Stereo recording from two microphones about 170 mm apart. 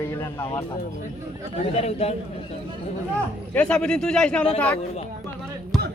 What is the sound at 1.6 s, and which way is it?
Speech, 35° left (ahead or behind).